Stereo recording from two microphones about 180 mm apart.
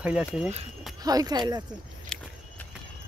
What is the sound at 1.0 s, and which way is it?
Speech, 20° right (ahead or behind).